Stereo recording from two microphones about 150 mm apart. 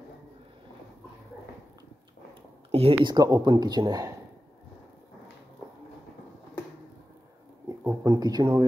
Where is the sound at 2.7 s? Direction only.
40° right (ahead or behind).